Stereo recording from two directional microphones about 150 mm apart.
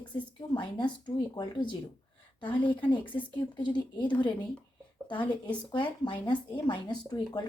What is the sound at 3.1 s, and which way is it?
Speech, 30° left (ahead or behind).